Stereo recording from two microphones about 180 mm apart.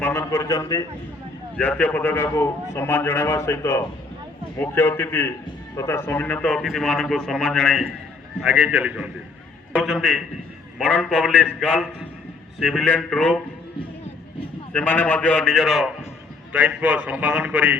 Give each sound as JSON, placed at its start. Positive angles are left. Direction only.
{"t": 0.0, "sound": "a man's voice", "side_deg": 10}
{"t": 14.7, "sound": "a man's voice", "side_deg": 10}